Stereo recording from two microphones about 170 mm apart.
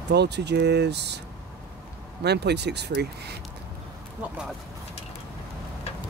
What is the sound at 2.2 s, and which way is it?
Speech, 80° right.